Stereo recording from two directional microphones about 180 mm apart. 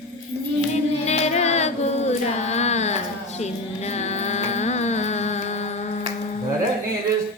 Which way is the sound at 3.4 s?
40° left (ahead or behind).